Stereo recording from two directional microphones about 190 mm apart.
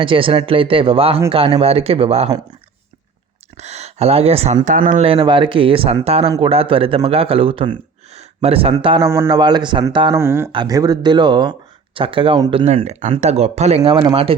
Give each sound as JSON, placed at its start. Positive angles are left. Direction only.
{"t": 0.0, "sound": "speech", "side_deg": -25}
{"t": 3.6, "sound": "speech", "side_deg": -35}
{"t": 5.0, "sound": "speech", "side_deg": -30}
{"t": 9.0, "sound": "speech", "side_deg": -15}